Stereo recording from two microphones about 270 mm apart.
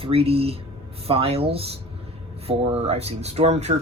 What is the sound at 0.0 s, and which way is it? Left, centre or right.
Speech, right.